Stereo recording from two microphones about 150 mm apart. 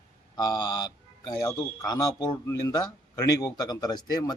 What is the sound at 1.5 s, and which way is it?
A man's voice, 25° left (ahead or behind).